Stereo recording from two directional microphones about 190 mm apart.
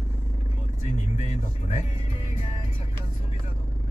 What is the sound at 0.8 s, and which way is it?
Music, 40° left (ahead or behind).